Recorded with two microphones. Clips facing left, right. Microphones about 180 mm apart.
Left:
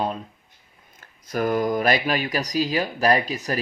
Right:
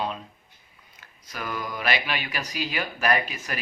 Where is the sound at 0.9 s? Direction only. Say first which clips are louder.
Left 12 dB; 45° left (ahead or behind).